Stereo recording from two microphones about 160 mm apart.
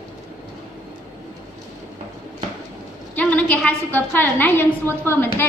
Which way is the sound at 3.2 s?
10° left (ahead or behind).